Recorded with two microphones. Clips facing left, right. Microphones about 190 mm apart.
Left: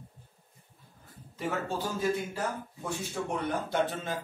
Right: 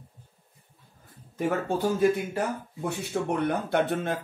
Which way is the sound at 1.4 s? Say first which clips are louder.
Right 6 dB; 55° right (ahead or behind).